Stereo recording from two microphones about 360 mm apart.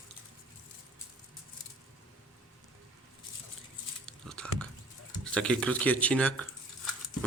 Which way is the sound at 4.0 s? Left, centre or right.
Centre.